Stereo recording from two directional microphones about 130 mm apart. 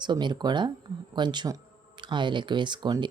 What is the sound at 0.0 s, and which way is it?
Speech, 35° right (ahead or behind).